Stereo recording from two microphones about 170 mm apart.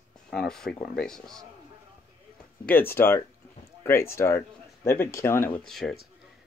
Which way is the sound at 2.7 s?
10° left (ahead or behind).